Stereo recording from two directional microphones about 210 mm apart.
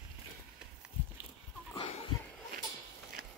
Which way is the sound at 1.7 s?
25° left (ahead or behind).